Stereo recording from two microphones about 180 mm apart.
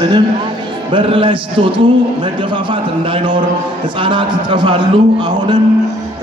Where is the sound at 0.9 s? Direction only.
30° right (ahead or behind).